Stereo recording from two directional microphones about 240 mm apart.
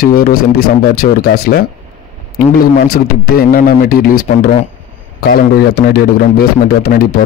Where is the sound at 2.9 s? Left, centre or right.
Left.